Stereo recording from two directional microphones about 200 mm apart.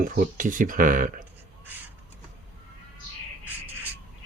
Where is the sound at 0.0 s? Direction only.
45° right (ahead or behind).